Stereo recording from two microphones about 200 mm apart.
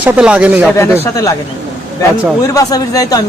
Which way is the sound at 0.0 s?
5° right (ahead or behind).